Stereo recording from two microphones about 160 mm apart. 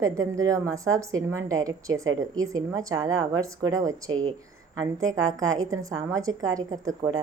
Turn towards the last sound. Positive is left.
turn(degrees=-20)  # may be behind; listen again after turning